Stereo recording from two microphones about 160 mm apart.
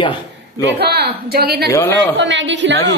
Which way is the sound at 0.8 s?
80° right.